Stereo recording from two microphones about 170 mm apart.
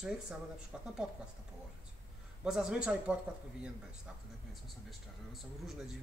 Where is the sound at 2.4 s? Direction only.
5° right (ahead or behind).